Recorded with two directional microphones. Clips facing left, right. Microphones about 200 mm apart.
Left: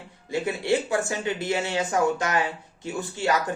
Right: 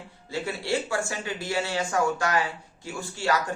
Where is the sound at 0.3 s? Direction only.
20° left (ahead or behind).